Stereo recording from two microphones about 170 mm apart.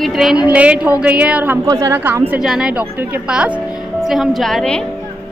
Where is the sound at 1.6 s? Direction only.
20° right (ahead or behind); by 4.8 s 5° left (ahead or behind).